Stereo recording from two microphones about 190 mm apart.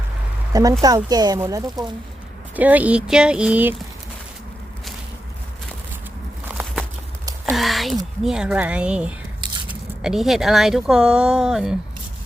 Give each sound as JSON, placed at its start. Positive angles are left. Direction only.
{"t": 0.5, "sound": "speech", "side_deg": -20}
{"t": 6.5, "sound": "a sound", "side_deg": -5}
{"t": 8.2, "sound": "speech", "side_deg": -5}